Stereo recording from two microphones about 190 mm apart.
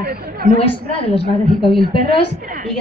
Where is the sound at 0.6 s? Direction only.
30° left (ahead or behind).